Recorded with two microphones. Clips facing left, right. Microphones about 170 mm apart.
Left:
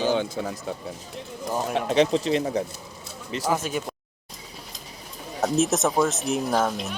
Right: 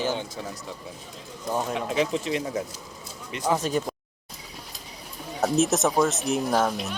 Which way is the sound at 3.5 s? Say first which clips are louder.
Right 3 dB; 5° left (ahead or behind).